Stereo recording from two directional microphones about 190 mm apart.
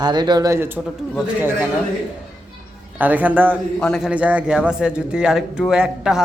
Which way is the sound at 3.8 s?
5° left (ahead or behind).